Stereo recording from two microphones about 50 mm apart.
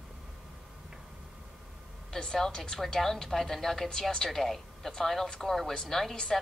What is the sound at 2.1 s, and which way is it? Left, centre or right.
A woman's voice, centre.